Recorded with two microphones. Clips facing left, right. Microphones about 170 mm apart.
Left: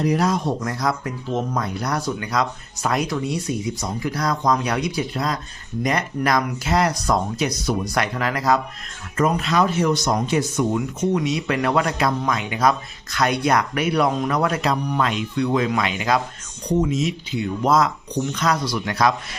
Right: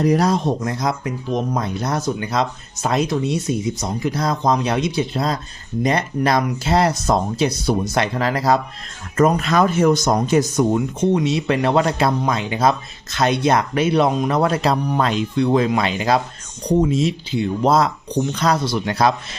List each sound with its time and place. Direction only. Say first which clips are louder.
0.0 s speech: right 3 dB; 40° right (ahead or behind)
0.3 s speech: right 3 dB; 20° right (ahead or behind)
9.1 s speech: right 4 dB; 45° right (ahead or behind); by 19.4 s 30° right (ahead or behind)